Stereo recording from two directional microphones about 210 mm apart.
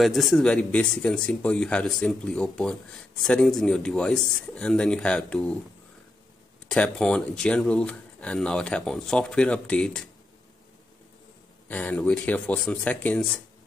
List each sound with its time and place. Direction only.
0.0 s speech: centre (ahead or behind)
6.7 s speech: 5° left (ahead or behind)
11.7 s speech: 5° left (ahead or behind)